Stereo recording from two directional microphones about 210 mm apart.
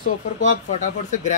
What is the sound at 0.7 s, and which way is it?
Speech, 35° left (ahead or behind).